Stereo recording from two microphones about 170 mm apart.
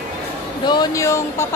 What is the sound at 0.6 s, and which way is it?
Speech, 25° left (ahead or behind).